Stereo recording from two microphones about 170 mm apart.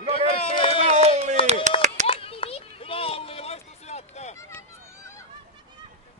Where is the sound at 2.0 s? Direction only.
35° left (ahead or behind).